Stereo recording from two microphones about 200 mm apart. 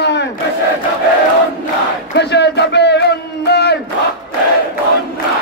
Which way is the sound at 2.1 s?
60° left (ahead or behind).